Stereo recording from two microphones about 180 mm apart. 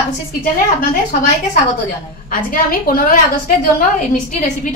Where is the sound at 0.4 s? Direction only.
50° left (ahead or behind).